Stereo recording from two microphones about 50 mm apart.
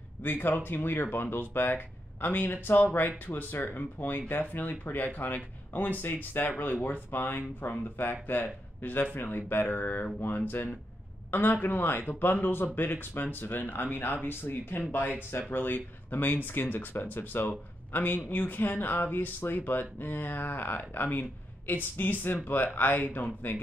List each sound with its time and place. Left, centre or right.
0.2 s speech: left